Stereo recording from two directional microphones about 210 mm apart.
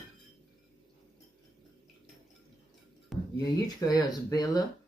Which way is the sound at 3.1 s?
Centre (ahead or behind).